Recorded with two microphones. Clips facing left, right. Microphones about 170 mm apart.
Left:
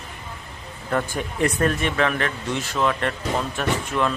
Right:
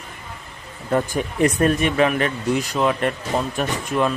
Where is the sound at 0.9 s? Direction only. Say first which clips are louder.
Right 4 dB; 20° right (ahead or behind).